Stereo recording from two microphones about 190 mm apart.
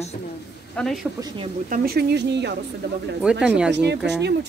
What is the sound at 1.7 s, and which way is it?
Speech, 55° right (ahead or behind).